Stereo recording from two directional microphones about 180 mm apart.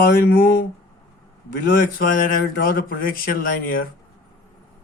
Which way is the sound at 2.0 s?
50° left (ahead or behind).